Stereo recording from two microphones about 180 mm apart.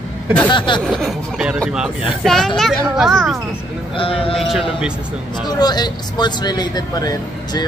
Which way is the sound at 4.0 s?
30° left (ahead or behind).